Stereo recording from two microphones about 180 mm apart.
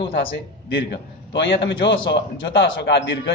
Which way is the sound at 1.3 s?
75° left (ahead or behind).